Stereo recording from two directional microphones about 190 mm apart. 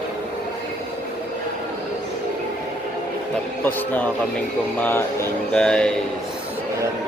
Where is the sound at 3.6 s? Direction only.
10° left (ahead or behind).